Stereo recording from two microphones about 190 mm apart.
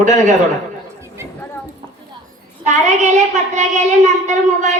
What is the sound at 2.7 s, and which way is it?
A woman's voice, 40° right (ahead or behind).